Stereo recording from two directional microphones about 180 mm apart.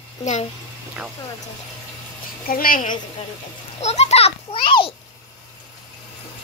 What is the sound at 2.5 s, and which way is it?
Speech, 50° left (ahead or behind).